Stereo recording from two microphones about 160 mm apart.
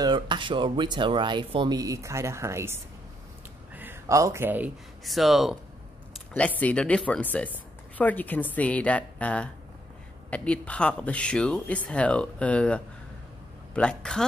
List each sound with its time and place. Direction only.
0.0 s speech: 30° right (ahead or behind); by 4.7 s 10° right (ahead or behind)
5.0 s speech: centre (ahead or behind)
6.6 s speech: 10° left (ahead or behind)